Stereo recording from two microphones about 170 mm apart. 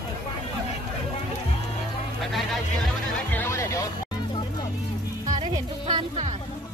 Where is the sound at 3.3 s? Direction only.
15° left (ahead or behind).